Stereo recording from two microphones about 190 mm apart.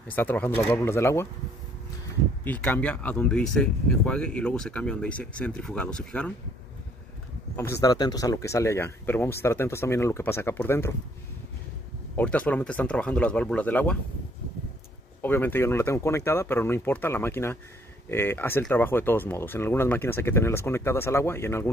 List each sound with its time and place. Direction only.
0.1 s speech: 10° left (ahead or behind)
2.4 s speech: 10° left (ahead or behind)
7.7 s speech: 20° left (ahead or behind)
12.2 s speech: 10° left (ahead or behind)
15.2 s speech: 10° left (ahead or behind)